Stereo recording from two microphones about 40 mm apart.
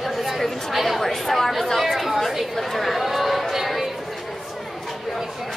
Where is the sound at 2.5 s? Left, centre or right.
Centre.